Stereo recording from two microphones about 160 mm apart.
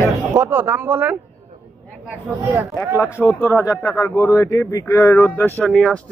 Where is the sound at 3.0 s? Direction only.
15° left (ahead or behind).